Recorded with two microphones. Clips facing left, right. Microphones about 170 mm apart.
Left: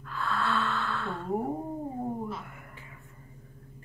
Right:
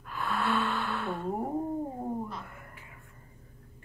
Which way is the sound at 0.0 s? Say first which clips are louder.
Even; 20° right (ahead or behind).